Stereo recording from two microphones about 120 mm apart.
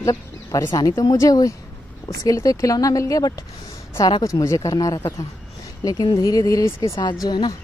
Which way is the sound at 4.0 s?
40° left (ahead or behind).